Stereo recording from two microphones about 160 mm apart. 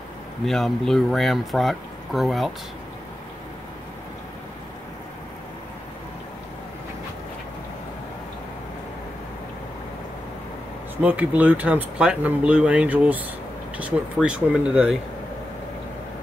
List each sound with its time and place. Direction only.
0.5 s speech: centre (ahead or behind)
11.0 s speech: 10° right (ahead or behind)